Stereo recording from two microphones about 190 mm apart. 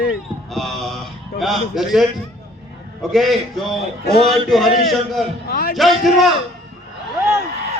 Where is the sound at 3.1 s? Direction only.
Centre (ahead or behind).